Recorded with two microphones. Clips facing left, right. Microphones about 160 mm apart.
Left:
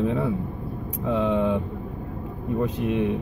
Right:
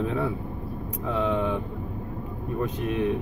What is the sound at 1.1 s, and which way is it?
Speech, 20° left (ahead or behind).